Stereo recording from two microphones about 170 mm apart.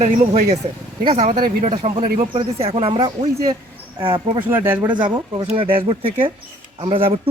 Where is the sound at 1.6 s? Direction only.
35° right (ahead or behind).